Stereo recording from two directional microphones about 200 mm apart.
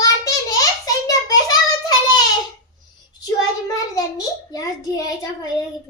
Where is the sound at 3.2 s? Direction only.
20° left (ahead or behind).